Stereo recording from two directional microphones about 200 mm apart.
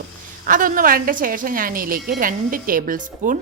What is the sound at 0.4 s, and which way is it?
A woman's voice, 45° right (ahead or behind).